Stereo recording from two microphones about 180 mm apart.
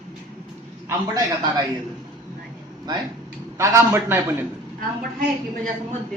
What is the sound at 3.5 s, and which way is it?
Speech, 15° right (ahead or behind).